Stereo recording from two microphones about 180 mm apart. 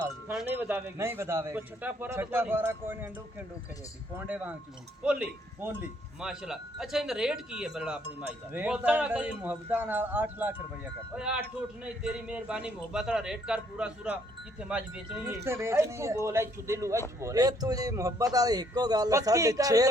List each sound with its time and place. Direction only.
0.3 s speech: 5° right (ahead or behind)
4.1 s a man's voice: 10° right (ahead or behind)